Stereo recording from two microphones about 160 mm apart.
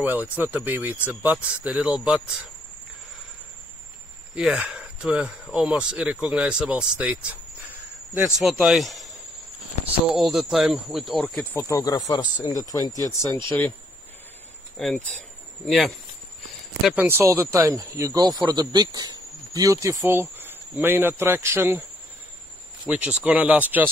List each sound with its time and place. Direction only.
0.0 s speech: 10° right (ahead or behind)
4.4 s speech: 5° right (ahead or behind)
10.1 s speech: centre (ahead or behind)
11.5 s speech: 20° left (ahead or behind)
14.8 s speech: centre (ahead or behind)
16.8 s speech: 10° right (ahead or behind)
22.8 s speech: 10° right (ahead or behind)